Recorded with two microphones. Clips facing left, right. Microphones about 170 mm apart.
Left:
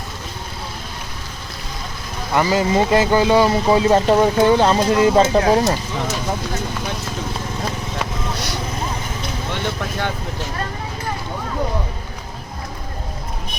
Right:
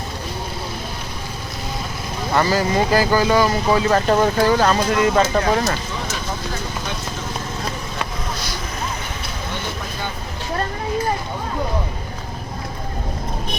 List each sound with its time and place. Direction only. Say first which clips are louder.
2.3 s speech: left 1 dB; 15° left (ahead or behind)